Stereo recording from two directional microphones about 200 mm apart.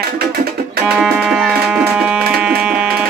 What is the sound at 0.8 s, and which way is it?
Music, 5° right (ahead or behind).